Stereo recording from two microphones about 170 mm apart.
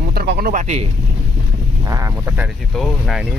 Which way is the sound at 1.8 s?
20° right (ahead or behind).